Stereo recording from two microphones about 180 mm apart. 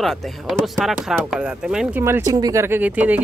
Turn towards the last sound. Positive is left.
turn(degrees=-10)  # may be behind; listen again after turning